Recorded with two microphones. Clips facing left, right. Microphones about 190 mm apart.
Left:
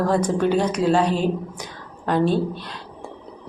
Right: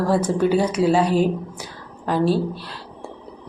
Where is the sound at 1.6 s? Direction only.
5° right (ahead or behind).